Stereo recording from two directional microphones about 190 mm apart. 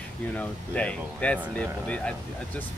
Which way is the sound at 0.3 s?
5° left (ahead or behind).